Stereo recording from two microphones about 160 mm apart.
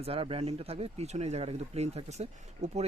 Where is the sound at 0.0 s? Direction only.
35° right (ahead or behind).